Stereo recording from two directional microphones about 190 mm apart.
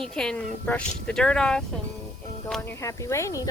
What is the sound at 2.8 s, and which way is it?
Speech, 15° left (ahead or behind).